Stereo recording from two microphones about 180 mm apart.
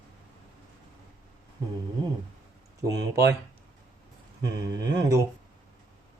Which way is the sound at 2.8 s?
15° right (ahead or behind).